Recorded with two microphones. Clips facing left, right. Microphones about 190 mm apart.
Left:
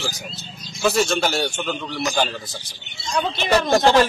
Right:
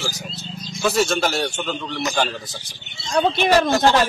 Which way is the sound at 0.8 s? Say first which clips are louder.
Even; centre (ahead or behind).